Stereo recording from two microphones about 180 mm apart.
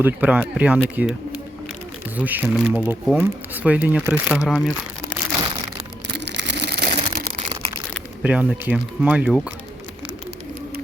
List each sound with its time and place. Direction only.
0.0 s speech: 10° right (ahead or behind)
6.1 s a sound: 75° right (ahead or behind)
8.2 s speech: 10° right (ahead or behind)